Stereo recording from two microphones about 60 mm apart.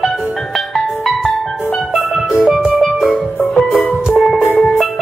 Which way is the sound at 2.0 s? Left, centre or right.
Centre.